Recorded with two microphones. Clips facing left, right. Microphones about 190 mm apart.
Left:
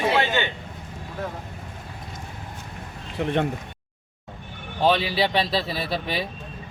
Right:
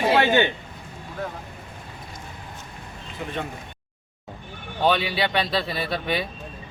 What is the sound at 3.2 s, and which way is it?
Speech, 65° left (ahead or behind).